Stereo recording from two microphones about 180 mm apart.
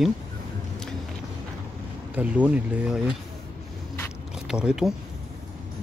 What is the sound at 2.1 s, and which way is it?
Speech, 10° right (ahead or behind).